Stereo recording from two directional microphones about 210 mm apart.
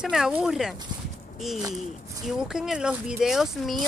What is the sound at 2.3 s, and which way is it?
Speech, 5° right (ahead or behind).